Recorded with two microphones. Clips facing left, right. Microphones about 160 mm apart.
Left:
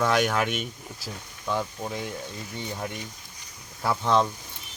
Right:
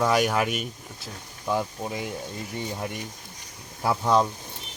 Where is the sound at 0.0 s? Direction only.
10° right (ahead or behind).